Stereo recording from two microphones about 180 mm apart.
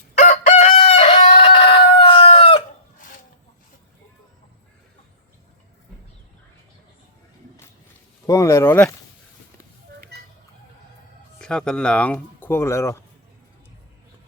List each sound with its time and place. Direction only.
0.2 s chicken: 45° left (ahead or behind)
8.3 s speech: 15° left (ahead or behind)
10.1 s music: 65° right (ahead or behind)
11.3 s speech: 5° left (ahead or behind)